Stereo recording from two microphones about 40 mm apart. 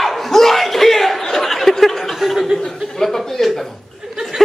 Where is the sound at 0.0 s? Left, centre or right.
Centre.